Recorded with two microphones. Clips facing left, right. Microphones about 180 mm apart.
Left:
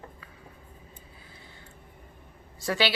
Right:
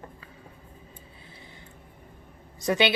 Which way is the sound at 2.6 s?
20° right (ahead or behind).